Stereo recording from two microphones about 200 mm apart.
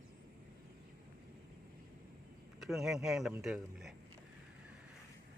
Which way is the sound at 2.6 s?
Centre (ahead or behind).